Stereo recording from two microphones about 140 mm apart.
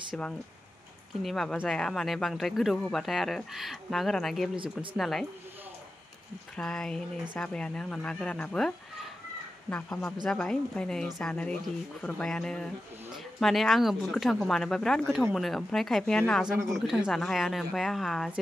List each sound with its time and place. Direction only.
0.1 s speech: 5° left (ahead or behind)
6.5 s speech: 5° left (ahead or behind)